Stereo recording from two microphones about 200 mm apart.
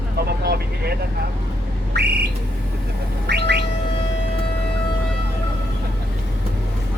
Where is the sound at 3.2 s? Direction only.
55° right (ahead or behind).